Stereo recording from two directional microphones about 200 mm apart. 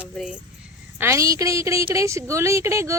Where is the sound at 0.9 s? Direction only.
15° right (ahead or behind).